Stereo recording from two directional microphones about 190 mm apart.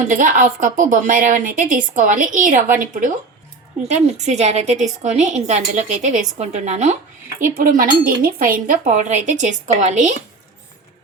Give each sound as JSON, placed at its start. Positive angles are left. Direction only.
{"t": 0.0, "sound": "a woman's voice", "side_deg": -45}